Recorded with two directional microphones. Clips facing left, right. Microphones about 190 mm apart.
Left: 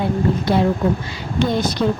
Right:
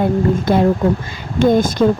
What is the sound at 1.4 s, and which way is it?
Speech, 50° right (ahead or behind).